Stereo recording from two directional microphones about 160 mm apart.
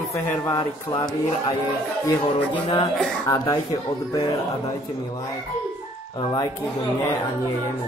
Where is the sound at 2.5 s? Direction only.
30° left (ahead or behind).